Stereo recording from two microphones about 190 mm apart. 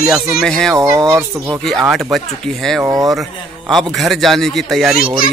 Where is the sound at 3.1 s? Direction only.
Centre (ahead or behind).